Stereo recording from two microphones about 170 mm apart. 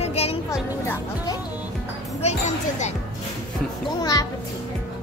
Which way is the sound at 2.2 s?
45° left (ahead or behind).